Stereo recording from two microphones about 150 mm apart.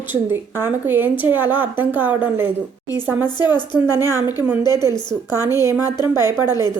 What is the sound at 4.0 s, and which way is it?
Speech, 15° right (ahead or behind).